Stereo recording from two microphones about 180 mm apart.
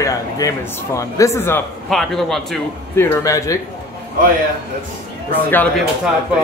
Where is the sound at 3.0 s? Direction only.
15° left (ahead or behind).